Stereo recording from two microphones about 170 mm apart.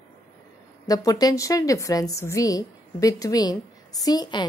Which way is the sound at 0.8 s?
20° left (ahead or behind).